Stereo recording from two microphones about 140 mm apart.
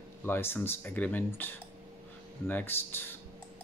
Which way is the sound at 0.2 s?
15° left (ahead or behind).